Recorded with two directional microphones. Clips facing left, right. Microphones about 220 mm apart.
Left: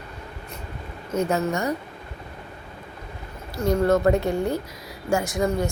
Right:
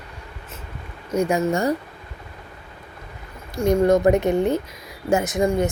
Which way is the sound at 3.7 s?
15° right (ahead or behind).